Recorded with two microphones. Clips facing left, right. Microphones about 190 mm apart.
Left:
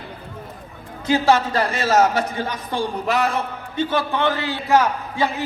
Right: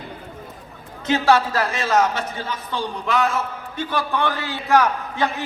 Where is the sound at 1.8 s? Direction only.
40° left (ahead or behind).